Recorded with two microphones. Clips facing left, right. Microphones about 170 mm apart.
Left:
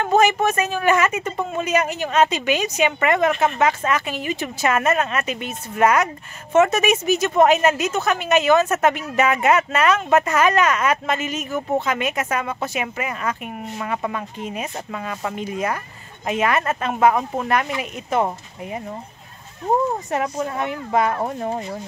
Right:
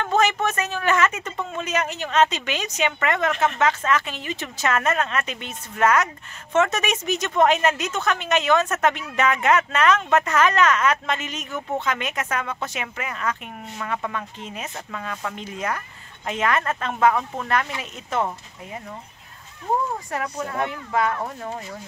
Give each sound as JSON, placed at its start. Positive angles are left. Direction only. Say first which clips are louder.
{"t": 0.0, "sound": "a woman's voice", "louder": "left 4 dB", "side_deg": 10}
{"t": 18.2, "sound": "speech", "louder": "left 4 dB", "side_deg": 25}
{"t": 20.1, "sound": "speech", "louder": "left 5 dB", "side_deg": 20}